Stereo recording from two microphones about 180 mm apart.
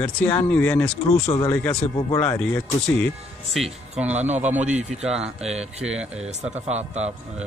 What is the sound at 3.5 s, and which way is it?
A man's voice, 5° right (ahead or behind).